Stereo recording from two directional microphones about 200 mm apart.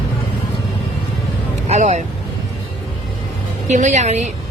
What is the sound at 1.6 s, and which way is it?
Vehicle, 35° right (ahead or behind).